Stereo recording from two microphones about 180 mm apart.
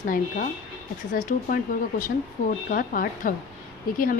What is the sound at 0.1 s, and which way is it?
A woman's voice, 50° left (ahead or behind).